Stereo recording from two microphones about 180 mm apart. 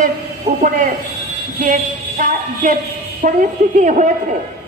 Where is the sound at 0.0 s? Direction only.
40° right (ahead or behind).